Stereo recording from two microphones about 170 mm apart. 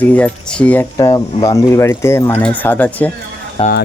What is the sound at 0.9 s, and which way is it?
Speech, 20° left (ahead or behind).